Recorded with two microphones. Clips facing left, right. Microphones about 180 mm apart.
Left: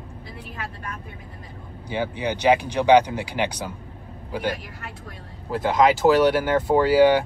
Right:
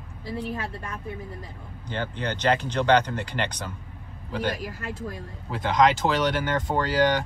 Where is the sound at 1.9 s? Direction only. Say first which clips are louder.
Left 4 dB; 10° left (ahead or behind).